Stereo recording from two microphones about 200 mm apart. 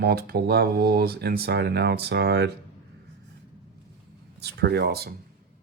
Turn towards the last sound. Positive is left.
turn(degrees=-50)  # may be behind; listen again after turning